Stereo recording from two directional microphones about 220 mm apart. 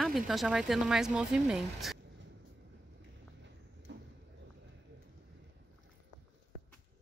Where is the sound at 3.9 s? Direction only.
55° right (ahead or behind).